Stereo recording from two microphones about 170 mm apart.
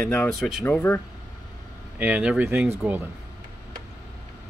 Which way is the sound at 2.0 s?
5° right (ahead or behind).